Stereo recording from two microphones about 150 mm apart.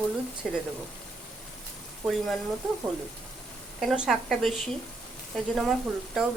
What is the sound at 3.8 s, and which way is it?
Speech, centre (ahead or behind).